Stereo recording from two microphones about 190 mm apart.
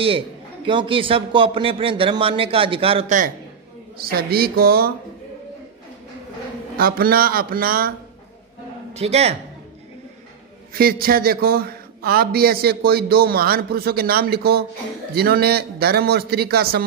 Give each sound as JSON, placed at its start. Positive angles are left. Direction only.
{"t": 0.7, "sound": "a man's voice", "side_deg": -25}
{"t": 4.1, "sound": "a man's voice", "side_deg": -55}
{"t": 6.8, "sound": "a man's voice", "side_deg": -50}
{"t": 8.9, "sound": "speech", "side_deg": -35}
{"t": 10.7, "sound": "a man's voice", "side_deg": -50}